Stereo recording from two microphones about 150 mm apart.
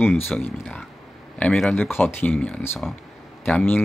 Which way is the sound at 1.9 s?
15° left (ahead or behind).